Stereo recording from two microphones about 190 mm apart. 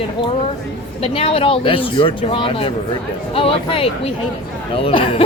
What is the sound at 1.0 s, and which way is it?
Speech, 30° left (ahead or behind).